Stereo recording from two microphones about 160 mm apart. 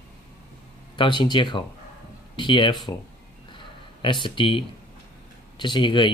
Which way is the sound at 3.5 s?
30° left (ahead or behind).